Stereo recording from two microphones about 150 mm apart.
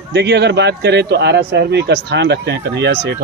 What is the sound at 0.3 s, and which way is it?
Speech, 90° right.